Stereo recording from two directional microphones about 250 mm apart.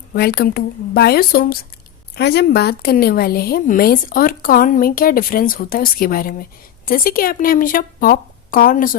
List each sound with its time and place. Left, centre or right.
0.1 s a woman's voice: left